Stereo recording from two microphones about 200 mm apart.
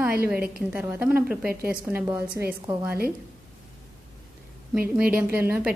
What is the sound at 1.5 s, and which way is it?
Speech, 45° right (ahead or behind).